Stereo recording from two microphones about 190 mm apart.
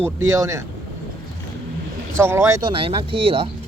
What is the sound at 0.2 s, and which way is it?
Speech, 15° right (ahead or behind).